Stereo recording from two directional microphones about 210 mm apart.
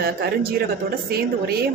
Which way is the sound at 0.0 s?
45° right (ahead or behind).